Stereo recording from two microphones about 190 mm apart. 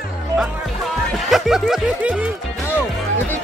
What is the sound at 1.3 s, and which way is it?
Music, centre (ahead or behind).